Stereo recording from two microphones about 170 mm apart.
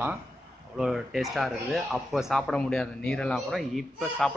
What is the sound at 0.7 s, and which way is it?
Speech, centre (ahead or behind).